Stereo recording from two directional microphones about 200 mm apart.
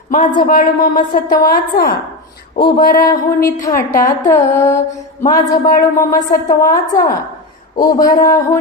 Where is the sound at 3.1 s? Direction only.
15° left (ahead or behind).